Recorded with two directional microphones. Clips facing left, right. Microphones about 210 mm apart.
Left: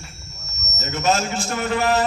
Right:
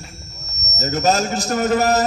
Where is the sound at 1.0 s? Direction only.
40° right (ahead or behind).